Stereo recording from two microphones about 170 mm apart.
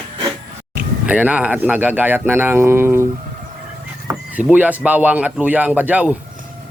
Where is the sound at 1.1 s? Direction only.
10° right (ahead or behind).